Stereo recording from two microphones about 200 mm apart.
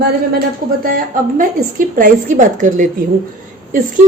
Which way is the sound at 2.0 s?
40° right (ahead or behind).